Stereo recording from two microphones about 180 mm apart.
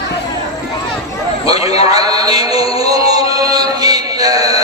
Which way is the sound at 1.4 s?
20° right (ahead or behind).